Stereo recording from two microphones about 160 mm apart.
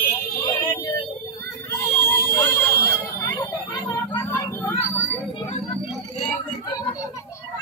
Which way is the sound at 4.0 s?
15° left (ahead or behind).